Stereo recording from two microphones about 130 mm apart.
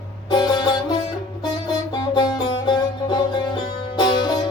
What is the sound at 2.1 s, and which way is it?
Music, 35° left (ahead or behind).